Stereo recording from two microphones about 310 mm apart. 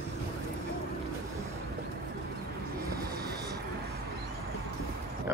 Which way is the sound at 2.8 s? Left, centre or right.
Right.